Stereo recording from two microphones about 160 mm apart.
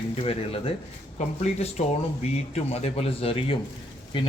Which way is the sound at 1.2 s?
45° left (ahead or behind).